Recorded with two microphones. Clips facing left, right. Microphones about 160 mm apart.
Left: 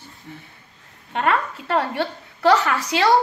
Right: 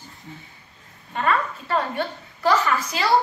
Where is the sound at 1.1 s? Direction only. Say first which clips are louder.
Left 2 dB; 75° left (ahead or behind).